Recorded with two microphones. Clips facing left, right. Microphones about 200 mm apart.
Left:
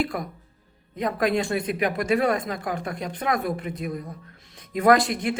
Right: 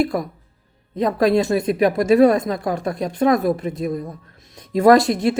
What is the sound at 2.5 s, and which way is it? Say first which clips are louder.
Speech: right 7 dB; 40° right (ahead or behind).